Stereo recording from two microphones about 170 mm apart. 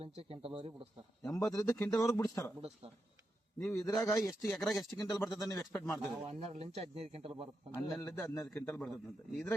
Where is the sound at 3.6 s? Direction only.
15° left (ahead or behind).